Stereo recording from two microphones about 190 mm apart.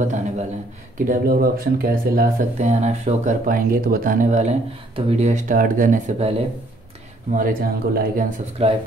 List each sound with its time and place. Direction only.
0.0 s speech: 40° right (ahead or behind)
7.3 s speech: 50° right (ahead or behind)
8.6 s speech: 35° right (ahead or behind)